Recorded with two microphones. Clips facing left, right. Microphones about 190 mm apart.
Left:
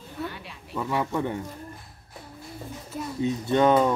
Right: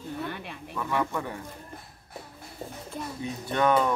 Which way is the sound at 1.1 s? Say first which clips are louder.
Left 5 dB; 20° left (ahead or behind).